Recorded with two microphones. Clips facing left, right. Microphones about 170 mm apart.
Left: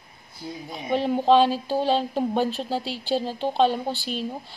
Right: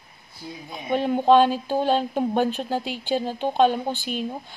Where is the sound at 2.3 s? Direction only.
15° right (ahead or behind).